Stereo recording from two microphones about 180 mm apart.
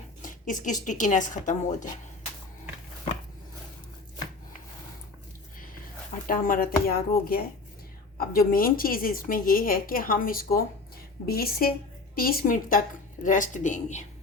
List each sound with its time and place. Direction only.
0.2 s speech: 45° left (ahead or behind)
6.2 s speech: 50° left (ahead or behind)